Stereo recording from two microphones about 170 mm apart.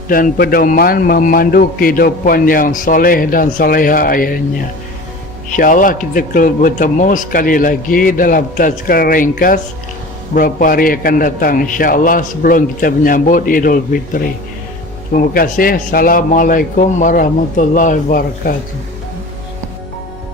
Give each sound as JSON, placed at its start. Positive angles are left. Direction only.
{"t": 0.1, "sound": "a man's voice", "side_deg": 60}
{"t": 5.5, "sound": "a man's voice", "side_deg": 50}